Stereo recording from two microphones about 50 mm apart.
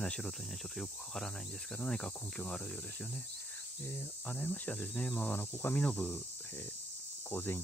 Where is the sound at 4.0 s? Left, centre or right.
Left.